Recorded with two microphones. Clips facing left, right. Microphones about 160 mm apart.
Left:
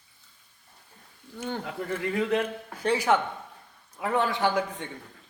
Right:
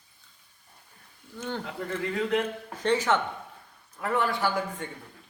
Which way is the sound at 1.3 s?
15° left (ahead or behind).